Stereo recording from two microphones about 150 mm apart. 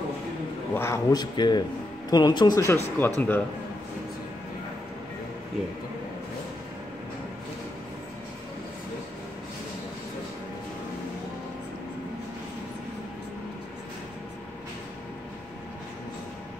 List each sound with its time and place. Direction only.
0.7 s speech: 20° left (ahead or behind)